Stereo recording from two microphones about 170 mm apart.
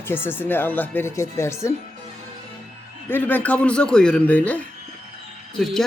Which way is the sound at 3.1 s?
10° left (ahead or behind).